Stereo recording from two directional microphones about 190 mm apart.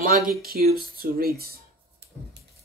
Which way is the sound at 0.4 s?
55° right (ahead or behind).